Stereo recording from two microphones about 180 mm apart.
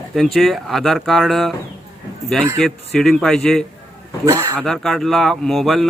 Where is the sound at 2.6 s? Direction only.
Centre (ahead or behind).